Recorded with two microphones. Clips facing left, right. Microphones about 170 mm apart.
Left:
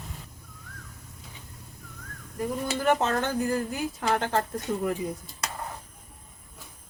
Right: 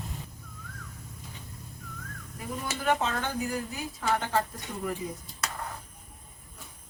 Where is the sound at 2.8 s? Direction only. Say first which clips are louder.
Left 3 dB; 50° left (ahead or behind).